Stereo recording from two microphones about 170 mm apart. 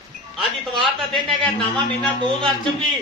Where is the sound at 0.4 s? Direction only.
Centre (ahead or behind).